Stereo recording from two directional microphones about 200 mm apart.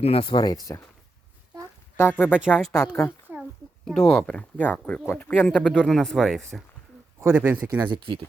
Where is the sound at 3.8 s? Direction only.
Centre (ahead or behind).